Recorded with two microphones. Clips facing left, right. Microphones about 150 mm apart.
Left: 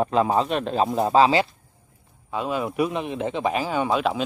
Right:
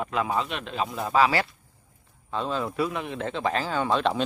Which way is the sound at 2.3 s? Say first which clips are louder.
Left 3 dB; 10° left (ahead or behind).